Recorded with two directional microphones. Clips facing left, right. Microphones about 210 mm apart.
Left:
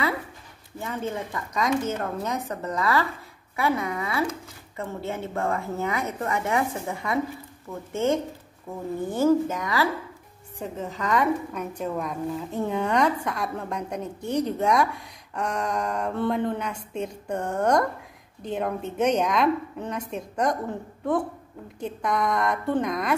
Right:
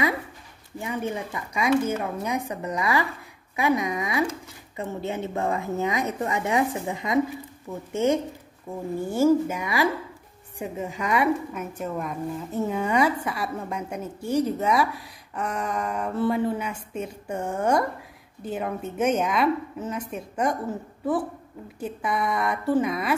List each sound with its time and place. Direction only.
0.7 s a woman's voice: 15° right (ahead or behind)
21.7 s a woman's voice: 5° right (ahead or behind)